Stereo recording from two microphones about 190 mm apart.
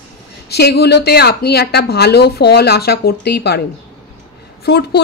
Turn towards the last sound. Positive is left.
turn(degrees=60)  # may be behind; listen again after turning